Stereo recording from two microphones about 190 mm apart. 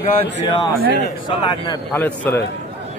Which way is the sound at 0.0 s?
25° left (ahead or behind).